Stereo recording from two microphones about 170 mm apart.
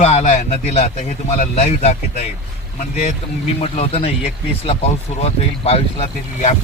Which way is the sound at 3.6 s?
35° left (ahead or behind).